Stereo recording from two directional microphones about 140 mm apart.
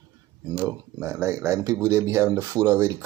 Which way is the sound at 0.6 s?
20° right (ahead or behind).